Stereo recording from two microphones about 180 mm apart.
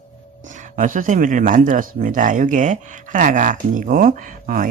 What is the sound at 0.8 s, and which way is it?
A woman's voice, 45° right (ahead or behind).